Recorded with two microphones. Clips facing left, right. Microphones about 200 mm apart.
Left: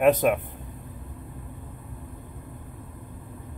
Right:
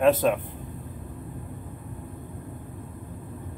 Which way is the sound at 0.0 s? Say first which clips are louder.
Left 1 dB; 15° left (ahead or behind).